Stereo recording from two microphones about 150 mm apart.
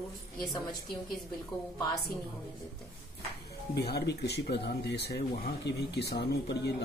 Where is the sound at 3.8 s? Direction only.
90° left.